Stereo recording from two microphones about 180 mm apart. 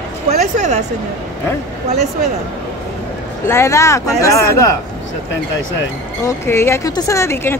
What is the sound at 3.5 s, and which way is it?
Speech, 15° left (ahead or behind).